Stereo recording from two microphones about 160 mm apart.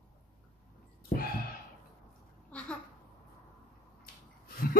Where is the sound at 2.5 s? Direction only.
5° left (ahead or behind).